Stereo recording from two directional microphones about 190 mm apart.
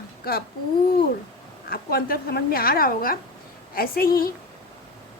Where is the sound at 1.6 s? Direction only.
55° left (ahead or behind).